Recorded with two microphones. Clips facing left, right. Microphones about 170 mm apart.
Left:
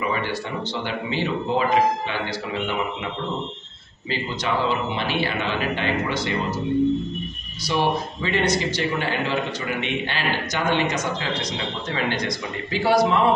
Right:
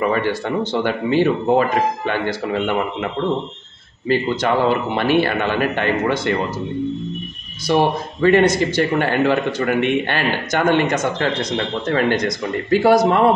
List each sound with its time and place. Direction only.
0.0 s a man's voice: 55° right (ahead or behind)
4.1 s a man's voice: 55° right (ahead or behind)
7.7 s a man's voice: 55° right (ahead or behind)